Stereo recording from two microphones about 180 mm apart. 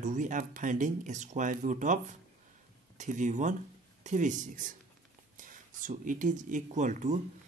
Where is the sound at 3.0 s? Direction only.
45° right (ahead or behind).